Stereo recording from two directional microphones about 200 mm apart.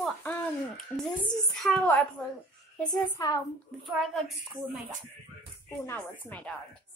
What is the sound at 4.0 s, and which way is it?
Speech, centre (ahead or behind).